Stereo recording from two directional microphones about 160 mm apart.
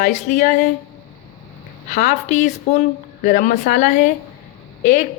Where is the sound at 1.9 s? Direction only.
50° left (ahead or behind).